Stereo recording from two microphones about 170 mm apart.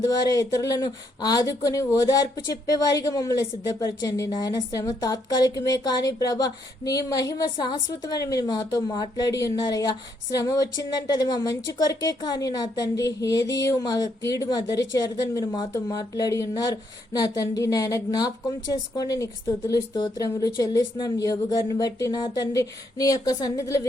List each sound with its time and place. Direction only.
0.1 s speech: 20° left (ahead or behind)